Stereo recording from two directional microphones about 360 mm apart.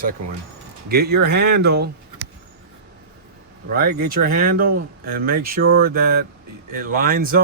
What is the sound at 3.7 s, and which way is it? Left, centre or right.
Speech, right.